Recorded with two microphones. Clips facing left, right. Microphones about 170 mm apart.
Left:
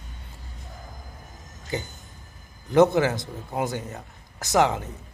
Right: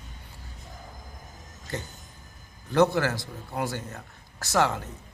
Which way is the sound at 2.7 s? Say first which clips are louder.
Left 4 dB; 20° left (ahead or behind).